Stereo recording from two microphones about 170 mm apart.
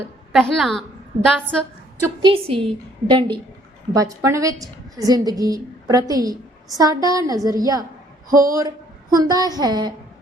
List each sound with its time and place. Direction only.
0.3 s a woman's voice: centre (ahead or behind)
2.2 s a woman's voice: 35° right (ahead or behind)
8.3 s speech: 55° right (ahead or behind)
9.1 s a woman's voice: 20° right (ahead or behind)